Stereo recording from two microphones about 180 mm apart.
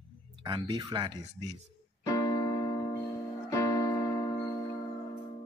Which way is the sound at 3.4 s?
15° left (ahead or behind).